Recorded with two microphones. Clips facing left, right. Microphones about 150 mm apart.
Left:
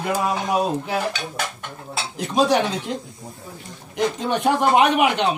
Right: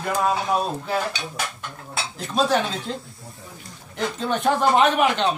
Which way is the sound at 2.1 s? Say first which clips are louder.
Left 3 dB; 15° left (ahead or behind).